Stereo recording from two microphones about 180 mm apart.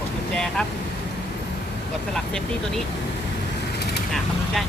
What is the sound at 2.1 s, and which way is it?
Speech, centre (ahead or behind).